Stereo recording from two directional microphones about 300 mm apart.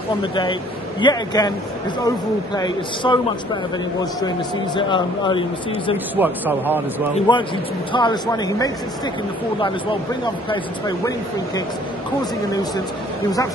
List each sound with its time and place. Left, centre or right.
1.0 s speech: centre
4.7 s speech: centre
6.1 s speech: centre
7.2 s speech: centre